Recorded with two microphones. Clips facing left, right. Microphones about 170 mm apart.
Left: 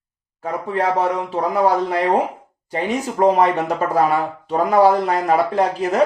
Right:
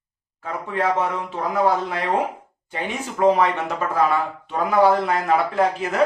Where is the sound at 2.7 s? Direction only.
40° left (ahead or behind).